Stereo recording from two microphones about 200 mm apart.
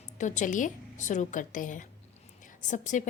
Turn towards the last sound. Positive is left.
turn(degrees=40)  # may be behind; listen again after turning